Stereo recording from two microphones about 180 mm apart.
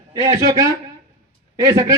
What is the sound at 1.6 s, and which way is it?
Speech, 20° right (ahead or behind).